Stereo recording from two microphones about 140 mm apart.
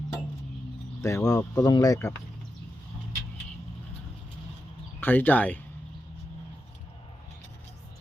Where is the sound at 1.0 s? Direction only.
25° left (ahead or behind).